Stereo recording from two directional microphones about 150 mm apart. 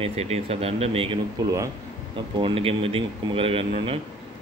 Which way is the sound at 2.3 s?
35° right (ahead or behind).